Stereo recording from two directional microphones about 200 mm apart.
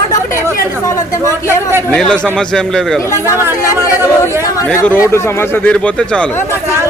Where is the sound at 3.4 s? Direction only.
10° right (ahead or behind).